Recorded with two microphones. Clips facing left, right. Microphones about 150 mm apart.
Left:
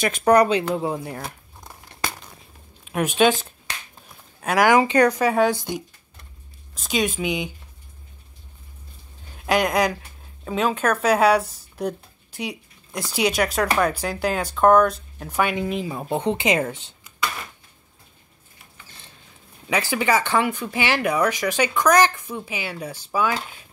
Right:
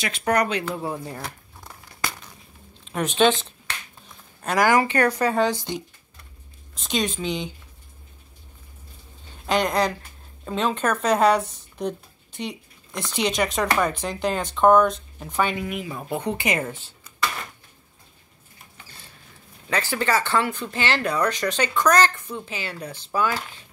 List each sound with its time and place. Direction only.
0.2 s speech: 30° left (ahead or behind)
2.9 s speech: 10° left (ahead or behind)
6.7 s speech: 5° left (ahead or behind)
9.5 s speech: 10° left (ahead or behind)
15.5 s speech: 30° left (ahead or behind)
19.7 s speech: 15° left (ahead or behind)